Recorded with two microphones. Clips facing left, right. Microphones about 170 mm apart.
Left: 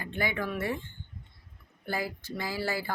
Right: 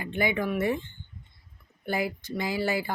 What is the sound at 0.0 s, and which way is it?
Speech, 20° right (ahead or behind).